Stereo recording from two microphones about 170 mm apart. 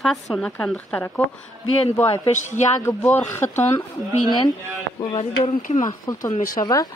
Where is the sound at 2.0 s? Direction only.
35° left (ahead or behind).